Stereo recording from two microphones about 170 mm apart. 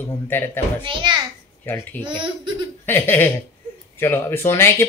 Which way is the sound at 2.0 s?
30° right (ahead or behind).